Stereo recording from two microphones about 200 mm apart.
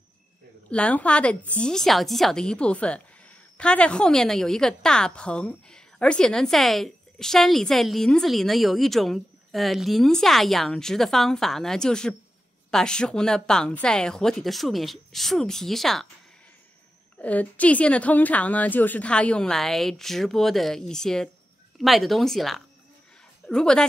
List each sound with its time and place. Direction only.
0.7 s a woman's voice: 5° left (ahead or behind)
17.2 s a woman's voice: 5° left (ahead or behind)